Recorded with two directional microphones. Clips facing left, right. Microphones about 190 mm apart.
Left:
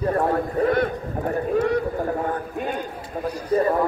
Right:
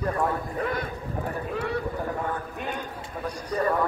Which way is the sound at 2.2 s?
45° left (ahead or behind).